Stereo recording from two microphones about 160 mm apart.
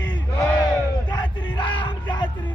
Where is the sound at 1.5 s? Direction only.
30° left (ahead or behind).